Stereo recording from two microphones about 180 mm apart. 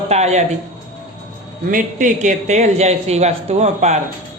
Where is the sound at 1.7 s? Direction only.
45° right (ahead or behind).